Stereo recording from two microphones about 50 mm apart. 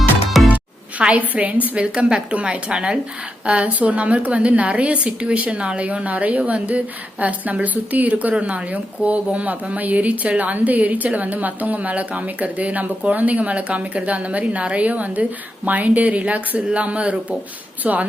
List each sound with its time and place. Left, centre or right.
0.4 s a woman's voice: right